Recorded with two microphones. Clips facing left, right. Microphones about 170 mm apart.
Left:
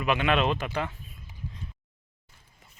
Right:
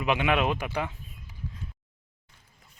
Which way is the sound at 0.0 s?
15° right (ahead or behind).